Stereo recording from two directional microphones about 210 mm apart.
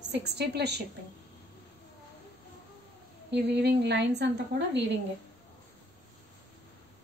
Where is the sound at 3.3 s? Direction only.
55° right (ahead or behind).